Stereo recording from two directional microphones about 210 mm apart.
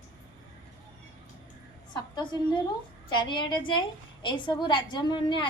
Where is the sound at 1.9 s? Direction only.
20° left (ahead or behind).